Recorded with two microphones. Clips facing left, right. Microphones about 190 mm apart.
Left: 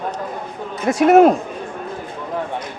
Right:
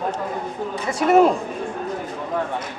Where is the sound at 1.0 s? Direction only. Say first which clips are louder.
Left 4 dB; 75° left (ahead or behind).